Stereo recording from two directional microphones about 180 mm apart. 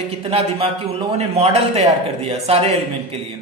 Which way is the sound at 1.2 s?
35° right (ahead or behind).